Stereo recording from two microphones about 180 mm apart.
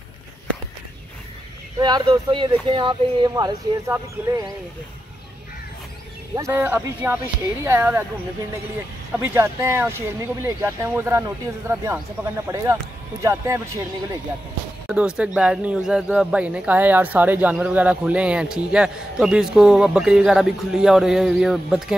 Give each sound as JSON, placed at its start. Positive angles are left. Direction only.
{"t": 1.8, "sound": "speech", "side_deg": -25}
{"t": 6.3, "sound": "speech", "side_deg": -15}
{"t": 9.1, "sound": "speech", "side_deg": -15}
{"t": 14.9, "sound": "speech", "side_deg": -5}